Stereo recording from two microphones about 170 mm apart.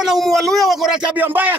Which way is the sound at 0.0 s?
Centre (ahead or behind).